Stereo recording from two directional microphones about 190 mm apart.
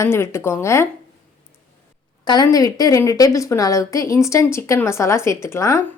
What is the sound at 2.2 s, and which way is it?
A woman's voice, 20° left (ahead or behind).